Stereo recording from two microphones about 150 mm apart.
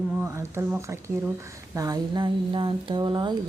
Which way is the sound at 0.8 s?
20° right (ahead or behind).